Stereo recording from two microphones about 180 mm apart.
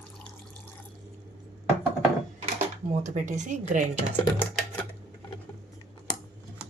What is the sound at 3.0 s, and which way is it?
Speech, 45° right (ahead or behind).